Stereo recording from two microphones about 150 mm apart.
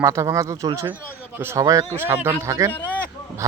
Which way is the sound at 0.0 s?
20° right (ahead or behind).